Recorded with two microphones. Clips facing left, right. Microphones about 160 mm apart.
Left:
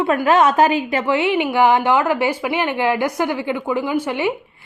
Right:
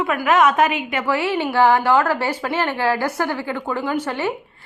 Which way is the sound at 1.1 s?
20° left (ahead or behind).